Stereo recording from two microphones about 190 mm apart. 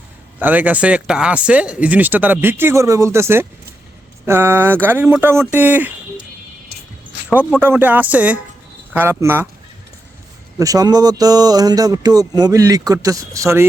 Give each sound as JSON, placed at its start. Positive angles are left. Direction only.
{"t": 0.3, "sound": "speech", "side_deg": -10}
{"t": 7.3, "sound": "speech", "side_deg": -5}
{"t": 10.6, "sound": "speech", "side_deg": -20}